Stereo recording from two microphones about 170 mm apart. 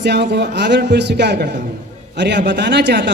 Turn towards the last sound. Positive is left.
turn(degrees=-90)